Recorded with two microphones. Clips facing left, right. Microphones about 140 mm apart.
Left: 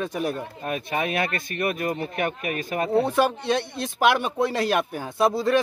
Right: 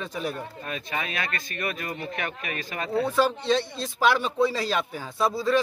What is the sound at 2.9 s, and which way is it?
Speech, 20° left (ahead or behind).